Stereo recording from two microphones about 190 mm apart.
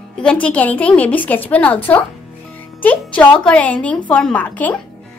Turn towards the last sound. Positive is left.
turn(degrees=10)  # may be behind; listen again after turning